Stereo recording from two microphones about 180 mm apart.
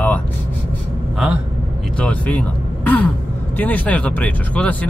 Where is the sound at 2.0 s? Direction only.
5° left (ahead or behind).